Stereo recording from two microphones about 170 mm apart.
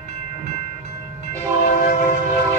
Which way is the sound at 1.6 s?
55° left (ahead or behind).